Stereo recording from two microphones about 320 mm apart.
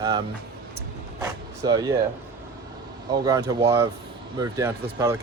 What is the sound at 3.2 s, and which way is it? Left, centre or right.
Speech, centre.